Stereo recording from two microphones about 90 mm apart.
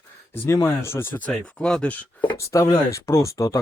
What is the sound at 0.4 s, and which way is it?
Speech, 30° left (ahead or behind).